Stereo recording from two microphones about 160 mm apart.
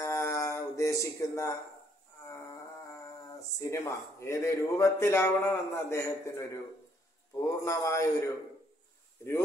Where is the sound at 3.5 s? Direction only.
15° left (ahead or behind).